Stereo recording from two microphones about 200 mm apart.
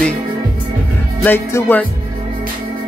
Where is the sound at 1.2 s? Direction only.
10° left (ahead or behind).